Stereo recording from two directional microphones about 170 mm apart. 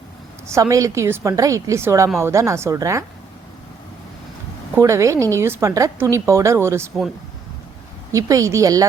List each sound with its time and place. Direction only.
0.4 s a woman's voice: 20° right (ahead or behind)
4.8 s speech: 15° right (ahead or behind)
8.1 s a woman's voice: 20° right (ahead or behind)